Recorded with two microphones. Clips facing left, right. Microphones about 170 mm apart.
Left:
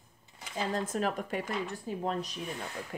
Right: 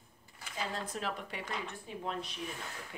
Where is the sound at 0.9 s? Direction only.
45° left (ahead or behind).